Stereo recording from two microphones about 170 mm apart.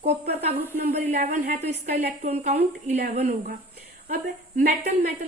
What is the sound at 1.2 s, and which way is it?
Speech, 45° right (ahead or behind).